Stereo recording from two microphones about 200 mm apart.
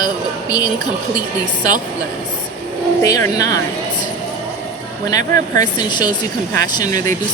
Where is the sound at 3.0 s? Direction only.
15° left (ahead or behind).